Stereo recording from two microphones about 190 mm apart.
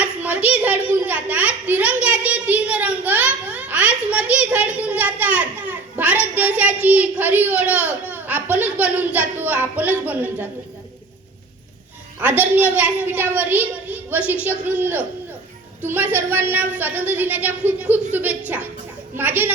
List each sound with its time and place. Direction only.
0.0 s a child's voice: 10° right (ahead or behind)
12.2 s a woman's voice: 10° right (ahead or behind)